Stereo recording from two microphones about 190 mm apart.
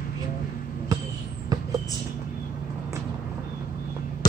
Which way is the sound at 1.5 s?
20° right (ahead or behind).